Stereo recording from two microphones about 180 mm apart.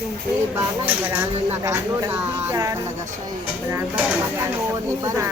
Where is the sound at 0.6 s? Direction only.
10° right (ahead or behind).